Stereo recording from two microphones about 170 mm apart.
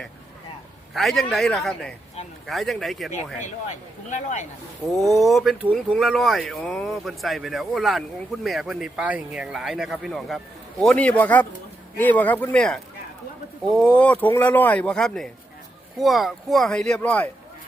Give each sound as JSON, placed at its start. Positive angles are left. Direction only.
{"t": 0.9, "sound": "speech", "side_deg": 0}
{"t": 3.4, "sound": "speech", "side_deg": 45}
{"t": 4.9, "sound": "speech", "side_deg": 0}